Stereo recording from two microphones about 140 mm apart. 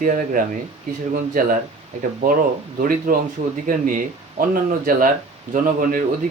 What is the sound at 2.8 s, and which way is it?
Speech, 85° right.